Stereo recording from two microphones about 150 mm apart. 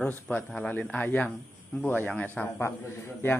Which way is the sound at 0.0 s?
10° left (ahead or behind).